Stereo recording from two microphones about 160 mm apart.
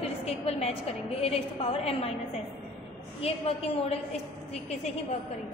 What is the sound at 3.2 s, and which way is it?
Speech, 40° left (ahead or behind).